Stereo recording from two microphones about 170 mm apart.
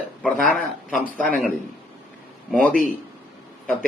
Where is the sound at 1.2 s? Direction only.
10° left (ahead or behind).